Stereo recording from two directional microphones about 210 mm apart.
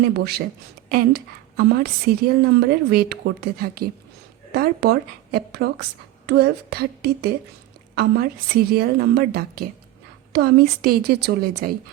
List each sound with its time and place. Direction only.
0.0 s a woman's voice: 50° right (ahead or behind)